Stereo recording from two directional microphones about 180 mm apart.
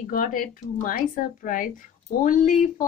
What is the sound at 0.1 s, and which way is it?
Speech, 50° left (ahead or behind).